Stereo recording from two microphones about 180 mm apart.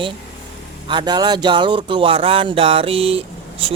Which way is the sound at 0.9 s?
25° right (ahead or behind).